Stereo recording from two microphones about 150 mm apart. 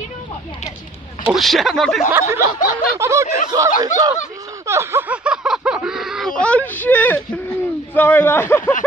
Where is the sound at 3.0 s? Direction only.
20° right (ahead or behind).